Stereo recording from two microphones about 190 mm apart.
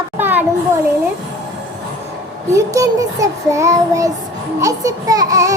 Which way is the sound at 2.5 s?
15° right (ahead or behind).